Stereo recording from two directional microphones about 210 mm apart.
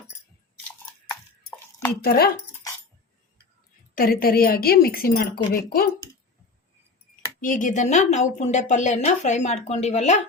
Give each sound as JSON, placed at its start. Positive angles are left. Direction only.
{"t": 1.5, "sound": "a sound", "side_deg": 10}
{"t": 2.0, "sound": "a woman's voice", "side_deg": 45}
{"t": 3.9, "sound": "a woman's voice", "side_deg": 45}
{"t": 7.4, "sound": "speech", "side_deg": 40}